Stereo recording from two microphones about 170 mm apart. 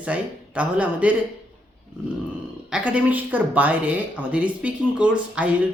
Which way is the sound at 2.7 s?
10° right (ahead or behind).